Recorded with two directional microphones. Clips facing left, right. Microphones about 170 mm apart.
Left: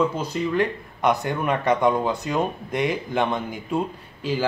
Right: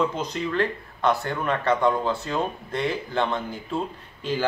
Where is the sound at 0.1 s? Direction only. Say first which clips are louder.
Left 3 dB; 10° left (ahead or behind).